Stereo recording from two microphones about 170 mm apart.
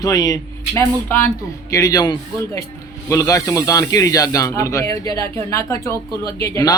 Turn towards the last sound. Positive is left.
turn(degrees=20)  # may be behind; listen again after turning